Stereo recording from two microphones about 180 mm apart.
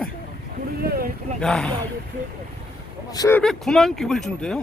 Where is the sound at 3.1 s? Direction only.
20° left (ahead or behind).